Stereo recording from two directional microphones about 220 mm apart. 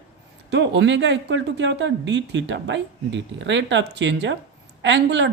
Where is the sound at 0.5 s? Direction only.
55° right (ahead or behind).